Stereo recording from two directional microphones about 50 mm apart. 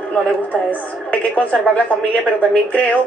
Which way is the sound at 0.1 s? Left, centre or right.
Left.